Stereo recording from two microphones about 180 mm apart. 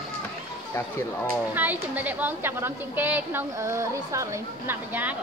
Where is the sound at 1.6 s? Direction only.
10° right (ahead or behind).